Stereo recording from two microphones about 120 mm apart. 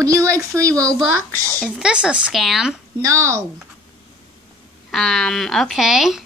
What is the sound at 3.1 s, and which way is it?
Speech, 25° right (ahead or behind).